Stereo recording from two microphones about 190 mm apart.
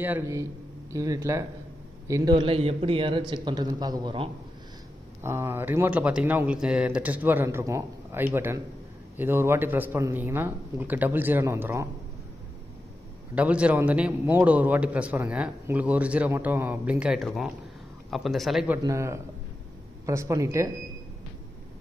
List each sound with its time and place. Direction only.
0.0 s a man's voice: 15° right (ahead or behind)
2.3 s a man's voice: 30° right (ahead or behind)
5.2 s a man's voice: 15° right (ahead or behind)
13.3 s a man's voice: 5° right (ahead or behind)
18.9 s a man's voice: 15° right (ahead or behind)